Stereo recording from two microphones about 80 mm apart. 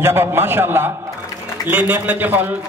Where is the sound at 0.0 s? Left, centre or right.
Right.